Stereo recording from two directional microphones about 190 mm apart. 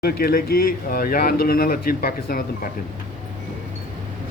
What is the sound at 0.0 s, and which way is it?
Speech, 50° left (ahead or behind).